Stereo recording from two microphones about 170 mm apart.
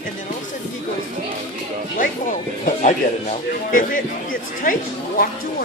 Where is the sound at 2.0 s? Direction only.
50° left (ahead or behind).